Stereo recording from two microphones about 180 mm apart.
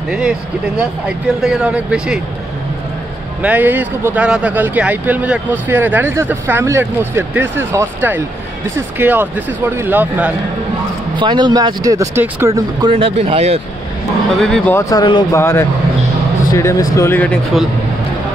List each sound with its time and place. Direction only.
0.7 s speech: 5° right (ahead or behind)
3.4 s speech: 10° right (ahead or behind)
11.1 s speech: 25° right (ahead or behind)
12.9 s speech: 30° right (ahead or behind)
14.4 s speech: 5° left (ahead or behind)
14.8 s speech: 20° left (ahead or behind)